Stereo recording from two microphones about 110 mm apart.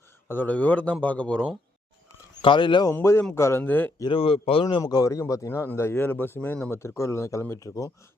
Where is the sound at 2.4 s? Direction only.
50° left (ahead or behind).